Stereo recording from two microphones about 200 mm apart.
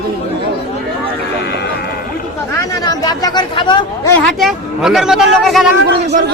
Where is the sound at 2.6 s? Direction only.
20° left (ahead or behind).